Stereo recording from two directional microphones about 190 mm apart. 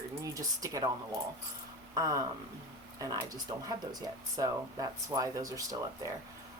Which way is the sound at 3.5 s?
20° right (ahead or behind).